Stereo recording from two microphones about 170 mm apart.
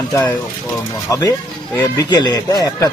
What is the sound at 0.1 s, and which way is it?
A man's voice, 20° left (ahead or behind).